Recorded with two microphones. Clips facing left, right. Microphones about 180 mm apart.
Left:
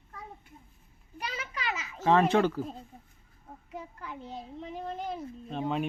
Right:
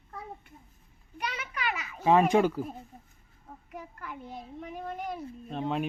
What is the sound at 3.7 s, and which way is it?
A child's voice, 25° left (ahead or behind).